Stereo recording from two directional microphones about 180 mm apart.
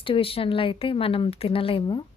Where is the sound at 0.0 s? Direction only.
30° left (ahead or behind).